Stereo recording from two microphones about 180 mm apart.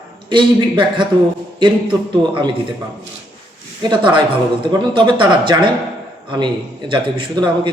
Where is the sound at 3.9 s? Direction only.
25° right (ahead or behind).